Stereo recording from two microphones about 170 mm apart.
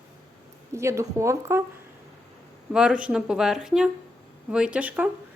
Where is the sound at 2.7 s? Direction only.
5° right (ahead or behind).